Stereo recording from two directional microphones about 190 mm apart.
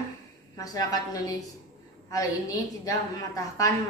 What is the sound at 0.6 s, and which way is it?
A woman's voice, 20° left (ahead or behind).